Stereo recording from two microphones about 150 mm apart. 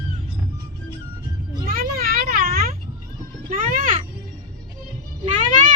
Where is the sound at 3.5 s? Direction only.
65° right (ahead or behind).